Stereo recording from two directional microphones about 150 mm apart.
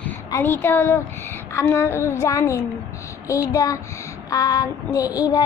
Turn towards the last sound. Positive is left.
turn(degrees=25)  # may be behind; listen again after turning